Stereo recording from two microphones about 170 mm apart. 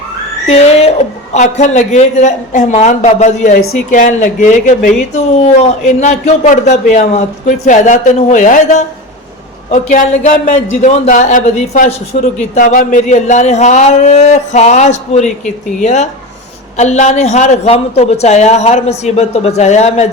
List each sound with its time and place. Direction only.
0.4 s a man's voice: 40° left (ahead or behind)